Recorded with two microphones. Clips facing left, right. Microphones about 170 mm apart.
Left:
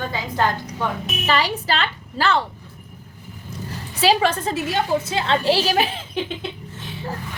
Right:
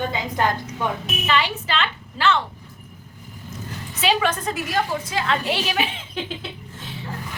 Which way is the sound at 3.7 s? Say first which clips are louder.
Left 4 dB; 35° left (ahead or behind).